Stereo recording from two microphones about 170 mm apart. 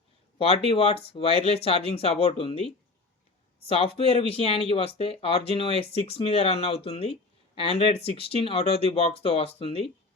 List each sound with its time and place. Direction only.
0.3 s speech: 35° left (ahead or behind)
3.7 s speech: 35° left (ahead or behind)